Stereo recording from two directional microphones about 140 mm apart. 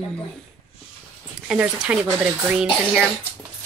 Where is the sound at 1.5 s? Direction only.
10° right (ahead or behind).